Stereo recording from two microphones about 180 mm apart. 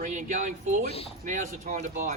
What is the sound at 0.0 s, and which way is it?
Speech, 45° right (ahead or behind).